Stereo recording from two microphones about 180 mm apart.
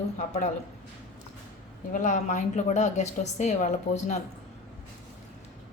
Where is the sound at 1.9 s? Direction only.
40° left (ahead or behind).